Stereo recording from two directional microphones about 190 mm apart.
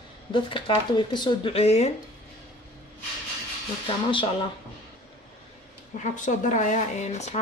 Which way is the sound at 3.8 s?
25° left (ahead or behind).